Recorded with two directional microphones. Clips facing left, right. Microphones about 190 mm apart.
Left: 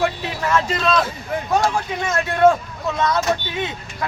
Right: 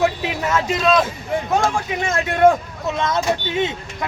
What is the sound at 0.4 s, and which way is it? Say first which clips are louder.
Speech: right 1 dB; 15° right (ahead or behind).